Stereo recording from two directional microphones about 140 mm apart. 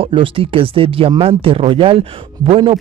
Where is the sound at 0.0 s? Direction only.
40° right (ahead or behind).